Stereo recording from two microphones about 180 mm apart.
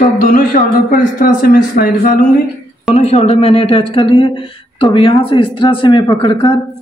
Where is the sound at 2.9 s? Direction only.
35° left (ahead or behind).